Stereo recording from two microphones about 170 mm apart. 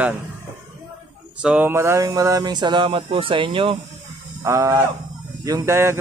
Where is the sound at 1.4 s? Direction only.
5° right (ahead or behind); by 3.8 s 30° right (ahead or behind).